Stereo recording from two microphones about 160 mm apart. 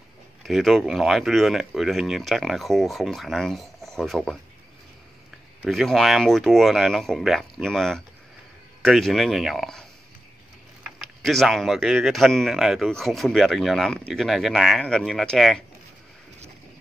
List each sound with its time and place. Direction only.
0.4 s speech: centre (ahead or behind)
5.7 s speech: centre (ahead or behind)